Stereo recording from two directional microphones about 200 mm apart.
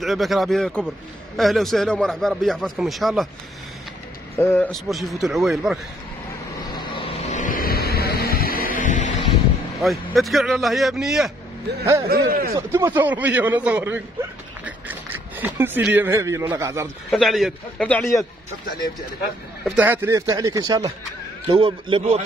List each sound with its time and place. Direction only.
0.0 s a man's voice: centre (ahead or behind)
4.4 s a man's voice: 10° left (ahead or behind)
6.7 s vehicle: 25° left (ahead or behind)
9.8 s a man's voice: centre (ahead or behind)
12.1 s speech: 45° right (ahead or behind)
12.5 s a man's voice: 15° right (ahead or behind)
17.1 s a man's voice: centre (ahead or behind)
19.6 s a man's voice: 5° right (ahead or behind); by 22.2 s 30° right (ahead or behind)